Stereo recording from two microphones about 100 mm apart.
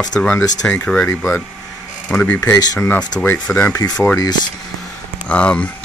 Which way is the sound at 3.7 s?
40° left (ahead or behind).